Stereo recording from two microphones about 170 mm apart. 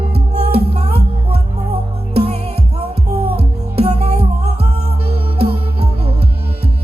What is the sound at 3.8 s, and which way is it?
Music, 35° right (ahead or behind).